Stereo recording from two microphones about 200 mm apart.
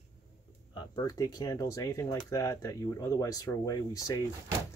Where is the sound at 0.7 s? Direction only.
20° left (ahead or behind).